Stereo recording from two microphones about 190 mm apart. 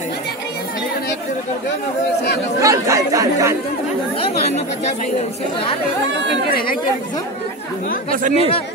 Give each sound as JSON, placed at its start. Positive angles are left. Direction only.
{"t": 2.6, "sound": "speech", "side_deg": -15}
{"t": 8.1, "sound": "speech", "side_deg": -45}